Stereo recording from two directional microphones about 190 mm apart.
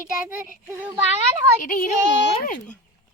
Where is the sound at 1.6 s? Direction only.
45° left (ahead or behind).